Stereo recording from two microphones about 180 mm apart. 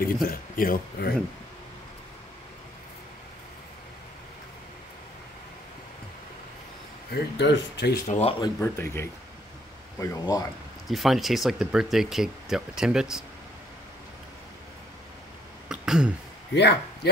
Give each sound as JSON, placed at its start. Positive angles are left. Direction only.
{"t": 0.0, "sound": "speech", "side_deg": 55}
{"t": 7.1, "sound": "speech", "side_deg": 80}
{"t": 8.1, "sound": "speech", "side_deg": 35}
{"t": 8.5, "sound": "speech", "side_deg": 15}
{"t": 10.9, "sound": "speech", "side_deg": 0}
{"t": 15.7, "sound": "a sound", "side_deg": -5}
{"t": 16.5, "sound": "speech", "side_deg": 70}